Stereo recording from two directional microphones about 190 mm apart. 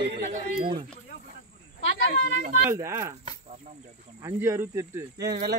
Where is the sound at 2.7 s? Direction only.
15° right (ahead or behind).